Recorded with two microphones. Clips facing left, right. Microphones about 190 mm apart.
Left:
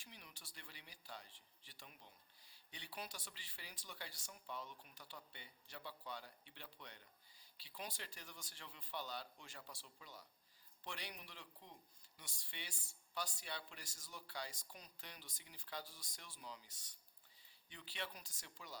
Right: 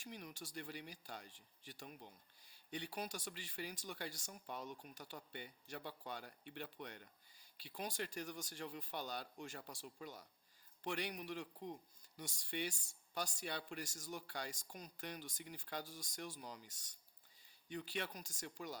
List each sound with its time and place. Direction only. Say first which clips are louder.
0.0 s speech: right 11 dB; 45° right (ahead or behind)